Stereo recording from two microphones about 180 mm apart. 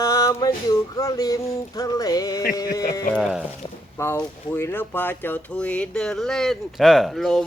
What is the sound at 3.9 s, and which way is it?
Speech, 15° left (ahead or behind).